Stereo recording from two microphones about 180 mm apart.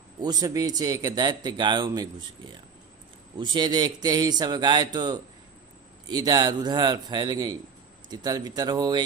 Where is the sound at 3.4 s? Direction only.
25° right (ahead or behind).